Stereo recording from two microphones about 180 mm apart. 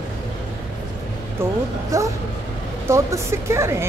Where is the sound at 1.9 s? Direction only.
15° right (ahead or behind).